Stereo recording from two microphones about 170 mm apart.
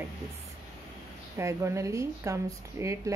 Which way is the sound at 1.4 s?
15° right (ahead or behind).